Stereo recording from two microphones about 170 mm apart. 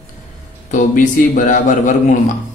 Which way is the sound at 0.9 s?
50° left (ahead or behind).